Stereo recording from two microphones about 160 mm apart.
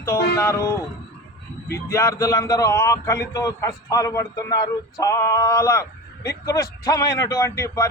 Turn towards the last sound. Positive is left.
turn(degrees=20)  # may be behind; listen again after turning